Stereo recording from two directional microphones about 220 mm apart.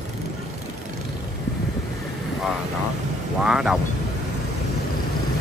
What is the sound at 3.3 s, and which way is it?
Speech, 5° right (ahead or behind).